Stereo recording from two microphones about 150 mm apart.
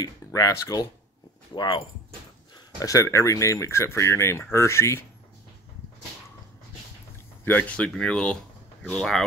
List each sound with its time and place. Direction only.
0.0 s speech: 20° left (ahead or behind)
7.4 s speech: 10° left (ahead or behind)